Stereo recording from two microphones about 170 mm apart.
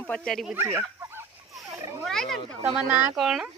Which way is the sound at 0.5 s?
15° right (ahead or behind).